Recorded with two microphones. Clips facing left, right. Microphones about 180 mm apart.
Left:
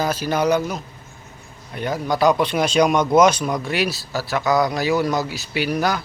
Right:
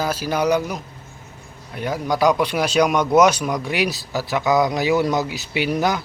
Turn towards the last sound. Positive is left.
turn(degrees=-20)  # may be behind; listen again after turning